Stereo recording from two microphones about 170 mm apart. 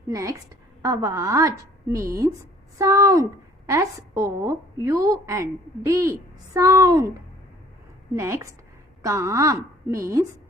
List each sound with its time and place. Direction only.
0.1 s a woman's voice: 20° right (ahead or behind)